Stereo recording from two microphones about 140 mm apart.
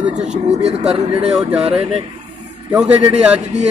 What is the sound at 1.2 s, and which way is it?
Speech, 5° right (ahead or behind).